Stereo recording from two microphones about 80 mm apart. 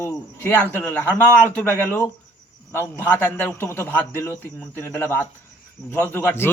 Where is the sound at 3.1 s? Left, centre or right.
Left.